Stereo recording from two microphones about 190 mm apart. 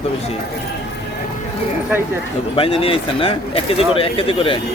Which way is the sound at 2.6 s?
30° left (ahead or behind).